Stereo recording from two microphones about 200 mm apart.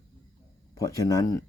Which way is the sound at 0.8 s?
20° left (ahead or behind).